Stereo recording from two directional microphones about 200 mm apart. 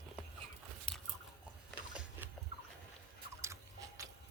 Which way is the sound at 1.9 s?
5° right (ahead or behind).